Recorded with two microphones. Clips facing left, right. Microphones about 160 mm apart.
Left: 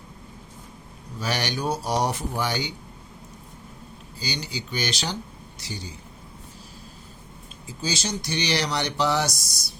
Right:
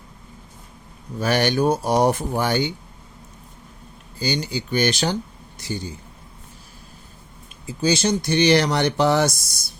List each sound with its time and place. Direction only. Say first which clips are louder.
1.2 s speech: right 8 dB; 55° right (ahead or behind)
4.2 s a man's voice: right 8 dB; 55° right (ahead or behind)
7.7 s speech: right 9 dB; 60° right (ahead or behind)